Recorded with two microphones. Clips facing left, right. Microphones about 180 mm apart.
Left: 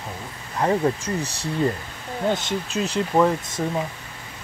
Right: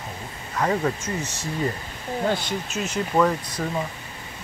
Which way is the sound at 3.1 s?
20° left (ahead or behind).